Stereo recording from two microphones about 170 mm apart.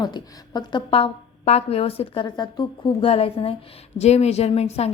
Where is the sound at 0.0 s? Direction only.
25° left (ahead or behind).